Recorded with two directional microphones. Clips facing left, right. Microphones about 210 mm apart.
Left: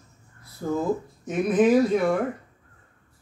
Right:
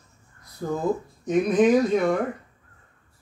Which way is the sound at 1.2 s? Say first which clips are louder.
Right 1 dB; 5° left (ahead or behind).